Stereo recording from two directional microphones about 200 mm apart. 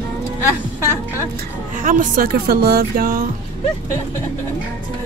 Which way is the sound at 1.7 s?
40° right (ahead or behind).